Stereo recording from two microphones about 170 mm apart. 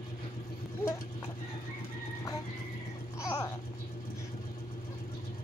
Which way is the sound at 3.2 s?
15° left (ahead or behind).